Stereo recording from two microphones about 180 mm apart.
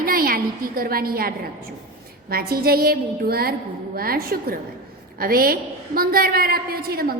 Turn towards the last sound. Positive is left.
turn(degrees=-60)  # may be behind; listen again after turning